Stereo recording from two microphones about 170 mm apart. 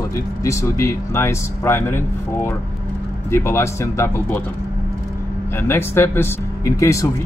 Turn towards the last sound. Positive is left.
turn(degrees=15)  # may be behind; listen again after turning